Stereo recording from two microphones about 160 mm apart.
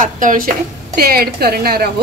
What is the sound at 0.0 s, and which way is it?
Speech, 55° right (ahead or behind).